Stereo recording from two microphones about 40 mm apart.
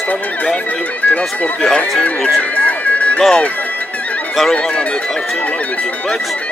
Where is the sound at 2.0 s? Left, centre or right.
Left.